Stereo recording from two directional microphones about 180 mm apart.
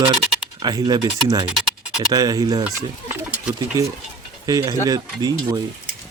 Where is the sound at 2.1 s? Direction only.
20° right (ahead or behind).